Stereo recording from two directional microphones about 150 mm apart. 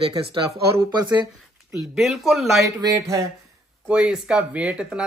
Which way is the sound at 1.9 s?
Centre (ahead or behind).